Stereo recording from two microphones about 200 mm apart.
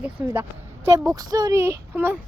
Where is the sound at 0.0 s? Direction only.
10° right (ahead or behind).